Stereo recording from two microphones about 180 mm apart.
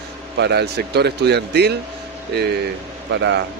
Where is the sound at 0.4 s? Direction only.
65° right (ahead or behind).